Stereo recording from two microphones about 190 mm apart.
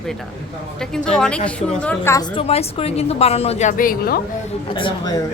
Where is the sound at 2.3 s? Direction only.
30° left (ahead or behind); by 4.2 s 50° left (ahead or behind).